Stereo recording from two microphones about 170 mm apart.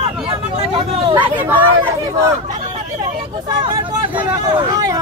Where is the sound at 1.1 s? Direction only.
10° right (ahead or behind).